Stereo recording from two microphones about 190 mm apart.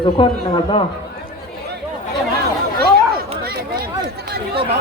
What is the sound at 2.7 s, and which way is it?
Chatter, 55° right (ahead or behind).